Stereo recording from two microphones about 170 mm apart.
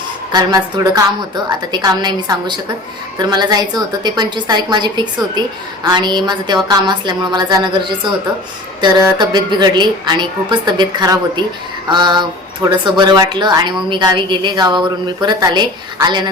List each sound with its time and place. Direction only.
0.3 s speech: 20° right (ahead or behind)